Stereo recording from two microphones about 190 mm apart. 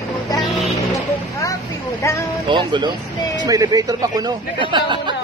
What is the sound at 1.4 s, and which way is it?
Speech, 15° left (ahead or behind).